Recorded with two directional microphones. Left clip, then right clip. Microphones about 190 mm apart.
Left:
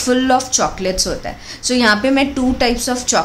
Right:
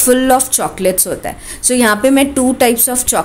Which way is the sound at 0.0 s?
25° right (ahead or behind).